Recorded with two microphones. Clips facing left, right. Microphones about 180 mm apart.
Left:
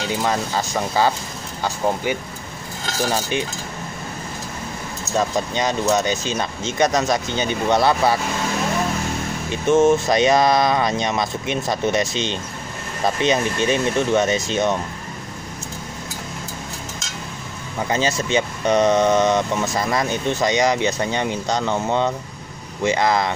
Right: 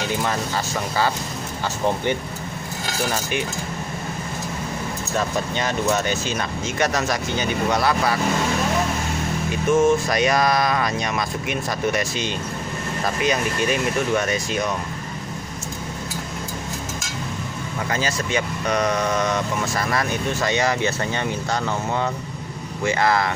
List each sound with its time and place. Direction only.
0.1 s speech: 15° left (ahead or behind)
5.1 s speech: 15° left (ahead or behind)
9.5 s speech: 25° left (ahead or behind)
17.8 s speech: 20° left (ahead or behind)